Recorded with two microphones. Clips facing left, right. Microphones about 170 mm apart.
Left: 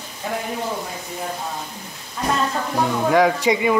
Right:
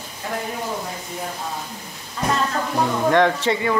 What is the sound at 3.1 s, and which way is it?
Speech, 10° left (ahead or behind).